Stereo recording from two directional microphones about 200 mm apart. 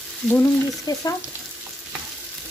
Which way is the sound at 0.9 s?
20° left (ahead or behind).